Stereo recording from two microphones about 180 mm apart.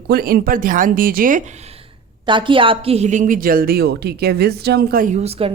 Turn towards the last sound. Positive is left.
turn(degrees=-30)  # may be behind; listen again after turning